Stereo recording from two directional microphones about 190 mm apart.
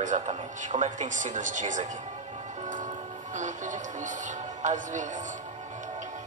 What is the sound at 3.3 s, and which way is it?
Speech, 40° right (ahead or behind).